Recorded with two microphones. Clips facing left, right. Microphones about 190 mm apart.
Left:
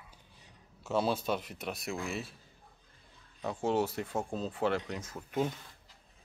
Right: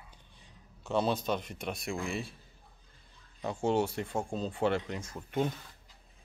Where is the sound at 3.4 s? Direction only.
Centre (ahead or behind).